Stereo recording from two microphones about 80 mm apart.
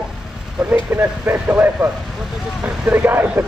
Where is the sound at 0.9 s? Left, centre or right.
Right.